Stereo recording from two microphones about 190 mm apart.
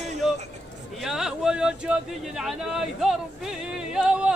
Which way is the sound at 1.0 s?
Centre (ahead or behind).